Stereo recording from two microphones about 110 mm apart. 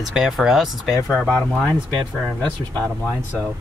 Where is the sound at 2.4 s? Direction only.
15° left (ahead or behind).